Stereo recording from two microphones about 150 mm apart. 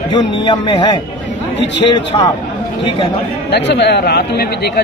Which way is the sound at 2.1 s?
35° left (ahead or behind).